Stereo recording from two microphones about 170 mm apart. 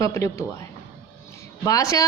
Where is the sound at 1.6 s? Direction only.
20° left (ahead or behind).